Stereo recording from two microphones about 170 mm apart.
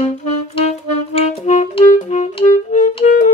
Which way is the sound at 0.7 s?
40° left (ahead or behind).